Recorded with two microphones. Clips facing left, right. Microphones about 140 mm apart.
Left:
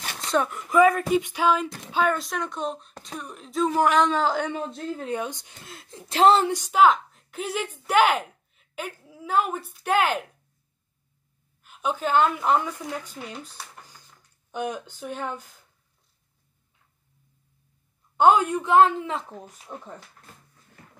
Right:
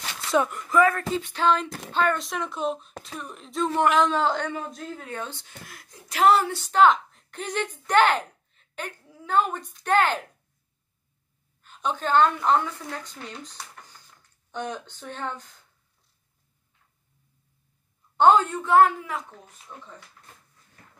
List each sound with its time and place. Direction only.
0.3 s speech: centre (ahead or behind)
0.7 s a woman's voice: 15° left (ahead or behind)
4.5 s a woman's voice: 25° left (ahead or behind)
5.1 s a woman's voice: 15° left (ahead or behind)
11.6 s a woman's voice: 10° left (ahead or behind)
18.1 s a woman's voice: 10° left (ahead or behind); by 19.3 s 25° left (ahead or behind)
19.7 s speech: 35° left (ahead or behind)